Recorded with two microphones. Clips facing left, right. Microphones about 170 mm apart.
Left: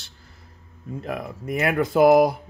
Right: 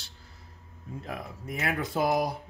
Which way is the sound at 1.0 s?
70° left (ahead or behind).